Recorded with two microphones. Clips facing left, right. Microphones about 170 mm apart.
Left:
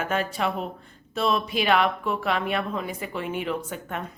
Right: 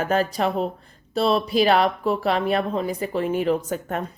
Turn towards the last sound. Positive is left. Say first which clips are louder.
# right 6 dB
turn(degrees=-40)  # may be behind; listen again after turning